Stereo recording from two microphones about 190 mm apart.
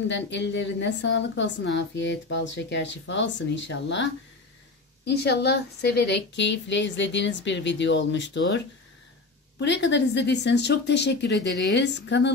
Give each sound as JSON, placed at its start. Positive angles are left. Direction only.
{"t": 0.1, "sound": "a woman's voice", "side_deg": 65}
{"t": 9.6, "sound": "speech", "side_deg": 65}